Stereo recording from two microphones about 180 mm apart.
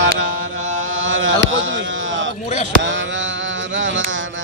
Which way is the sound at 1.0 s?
90° right.